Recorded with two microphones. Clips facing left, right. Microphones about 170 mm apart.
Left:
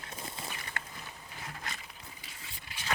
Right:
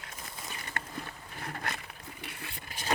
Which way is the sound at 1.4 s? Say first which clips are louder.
Right 6 dB; 60° right (ahead or behind).